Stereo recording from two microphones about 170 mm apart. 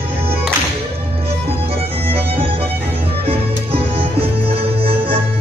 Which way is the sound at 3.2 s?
35° right (ahead or behind).